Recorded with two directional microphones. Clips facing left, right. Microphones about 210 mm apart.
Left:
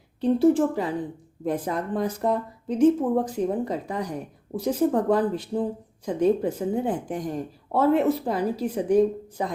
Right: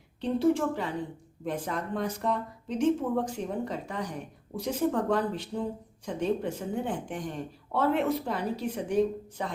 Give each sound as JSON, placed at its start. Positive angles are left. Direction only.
{"t": 0.2, "sound": "a woman's voice", "side_deg": 35}